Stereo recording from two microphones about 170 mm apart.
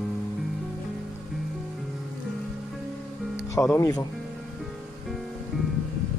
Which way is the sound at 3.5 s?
20° left (ahead or behind).